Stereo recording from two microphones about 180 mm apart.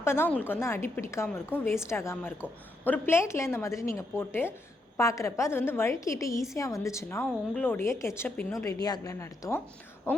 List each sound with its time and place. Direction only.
0.0 s a woman's voice: 15° left (ahead or behind)